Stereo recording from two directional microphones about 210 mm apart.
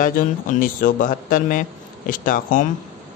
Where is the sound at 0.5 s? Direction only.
40° left (ahead or behind).